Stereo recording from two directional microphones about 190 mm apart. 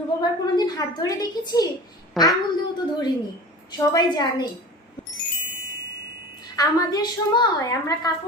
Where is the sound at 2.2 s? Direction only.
Centre (ahead or behind).